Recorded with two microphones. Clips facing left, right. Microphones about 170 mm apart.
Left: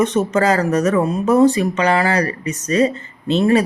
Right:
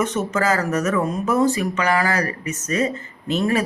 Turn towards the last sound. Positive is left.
turn(degrees=30)  # may be behind; listen again after turning